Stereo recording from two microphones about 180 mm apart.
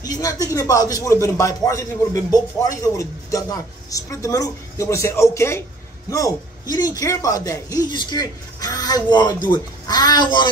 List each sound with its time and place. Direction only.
0.0 s a man's voice: 20° left (ahead or behind)